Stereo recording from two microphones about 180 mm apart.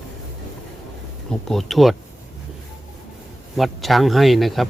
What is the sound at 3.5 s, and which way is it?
Speech, centre (ahead or behind).